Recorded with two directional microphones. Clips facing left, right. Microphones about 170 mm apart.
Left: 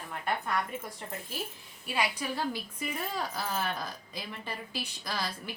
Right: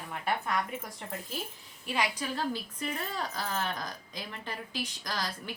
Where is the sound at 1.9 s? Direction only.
10° left (ahead or behind).